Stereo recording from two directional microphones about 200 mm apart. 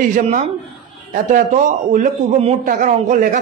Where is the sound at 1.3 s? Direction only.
40° right (ahead or behind).